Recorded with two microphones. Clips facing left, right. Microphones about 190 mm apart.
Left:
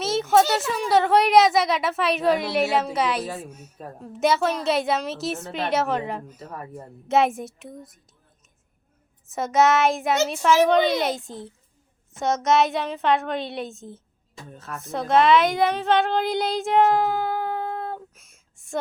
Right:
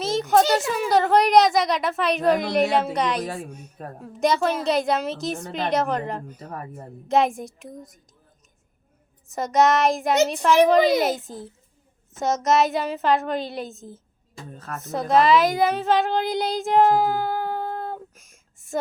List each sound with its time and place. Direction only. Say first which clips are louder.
0.0 s speech: even; centre (ahead or behind)
9.3 s a woman's voice: even; centre (ahead or behind)